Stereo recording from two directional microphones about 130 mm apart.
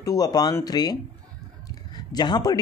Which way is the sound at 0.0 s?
30° left (ahead or behind).